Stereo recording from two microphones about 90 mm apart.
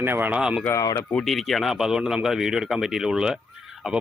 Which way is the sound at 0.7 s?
35° left (ahead or behind).